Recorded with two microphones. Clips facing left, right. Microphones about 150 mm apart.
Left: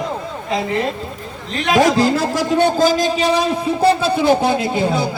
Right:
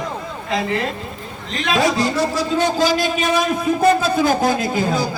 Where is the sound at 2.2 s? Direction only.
85° left.